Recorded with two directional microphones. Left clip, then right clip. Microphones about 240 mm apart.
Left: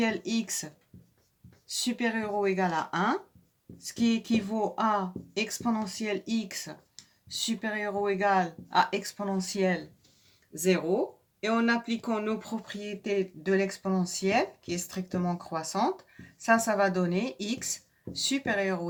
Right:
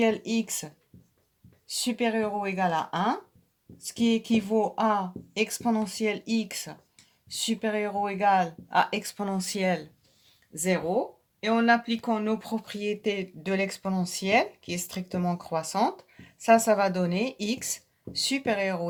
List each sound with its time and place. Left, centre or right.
0.0 s speech: right